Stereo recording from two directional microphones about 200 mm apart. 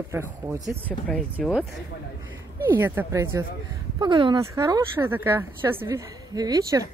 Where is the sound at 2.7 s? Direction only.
10° right (ahead or behind).